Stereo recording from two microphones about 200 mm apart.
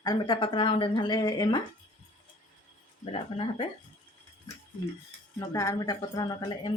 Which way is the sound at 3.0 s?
30° left (ahead or behind).